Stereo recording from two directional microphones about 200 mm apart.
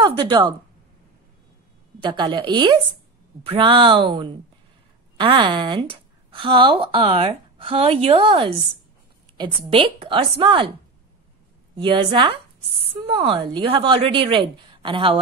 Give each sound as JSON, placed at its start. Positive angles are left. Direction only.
{"t": 0.0, "sound": "a woman's voice", "side_deg": -25}
{"t": 2.0, "sound": "a woman's voice", "side_deg": -25}
{"t": 11.7, "sound": "a woman's voice", "side_deg": -25}